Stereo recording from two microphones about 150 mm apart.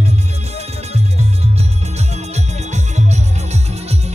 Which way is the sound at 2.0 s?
50° right (ahead or behind).